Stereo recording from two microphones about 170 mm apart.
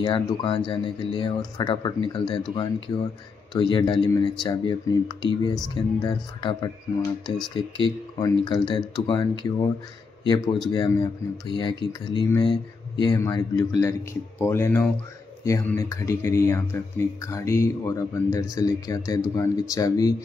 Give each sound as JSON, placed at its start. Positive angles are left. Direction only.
{"t": 0.0, "sound": "speech", "side_deg": 25}